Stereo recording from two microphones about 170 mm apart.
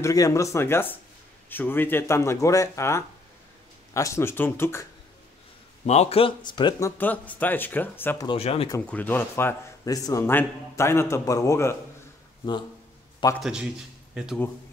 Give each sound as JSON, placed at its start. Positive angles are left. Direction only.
{"t": 0.0, "sound": "a man's voice", "side_deg": 20}
{"t": 5.9, "sound": "speech", "side_deg": 40}
{"t": 7.0, "sound": "a man's voice", "side_deg": 10}
{"t": 8.3, "sound": "speech", "side_deg": 35}
{"t": 8.8, "sound": "a man's voice", "side_deg": 10}
{"t": 13.4, "sound": "a man's voice", "side_deg": -5}